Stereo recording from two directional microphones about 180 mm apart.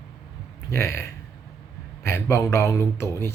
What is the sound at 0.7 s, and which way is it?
Speech, 15° left (ahead or behind).